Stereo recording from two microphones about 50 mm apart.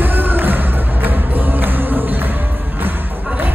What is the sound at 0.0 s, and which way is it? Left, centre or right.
Music, right.